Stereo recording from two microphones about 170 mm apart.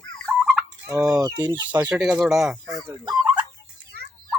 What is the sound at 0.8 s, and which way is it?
Speech, 20° right (ahead or behind).